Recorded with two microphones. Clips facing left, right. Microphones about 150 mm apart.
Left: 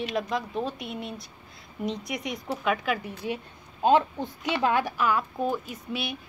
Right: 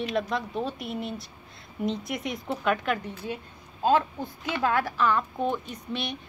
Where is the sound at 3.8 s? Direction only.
20° left (ahead or behind).